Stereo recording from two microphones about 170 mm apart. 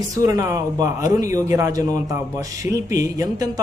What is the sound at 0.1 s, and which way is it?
A man's voice, 20° right (ahead or behind).